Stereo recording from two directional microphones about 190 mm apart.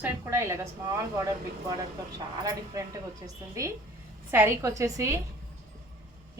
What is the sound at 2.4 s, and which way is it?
A woman's voice, 20° right (ahead or behind).